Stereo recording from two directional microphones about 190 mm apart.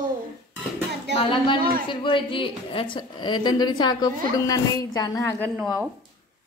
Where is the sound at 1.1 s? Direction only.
25° left (ahead or behind).